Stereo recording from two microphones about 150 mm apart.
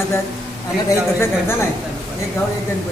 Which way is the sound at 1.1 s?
15° left (ahead or behind).